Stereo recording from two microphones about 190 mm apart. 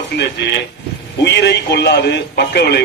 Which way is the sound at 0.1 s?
60° left (ahead or behind).